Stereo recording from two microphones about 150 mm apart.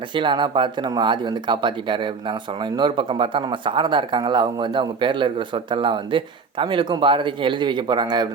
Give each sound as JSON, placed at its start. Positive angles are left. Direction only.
{"t": 0.1, "sound": "speech", "side_deg": -30}